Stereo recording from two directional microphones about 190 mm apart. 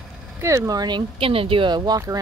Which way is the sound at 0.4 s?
15° right (ahead or behind).